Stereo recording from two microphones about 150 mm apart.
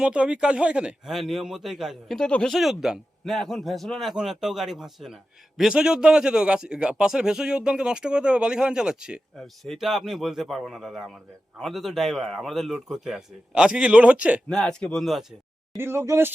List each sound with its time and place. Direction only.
0.0 s a man's voice: 5° right (ahead or behind)
14.5 s a man's voice: 5° left (ahead or behind)
15.8 s speech: 15° right (ahead or behind)